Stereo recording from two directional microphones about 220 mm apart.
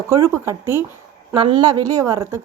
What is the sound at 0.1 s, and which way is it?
Speech, 15° right (ahead or behind).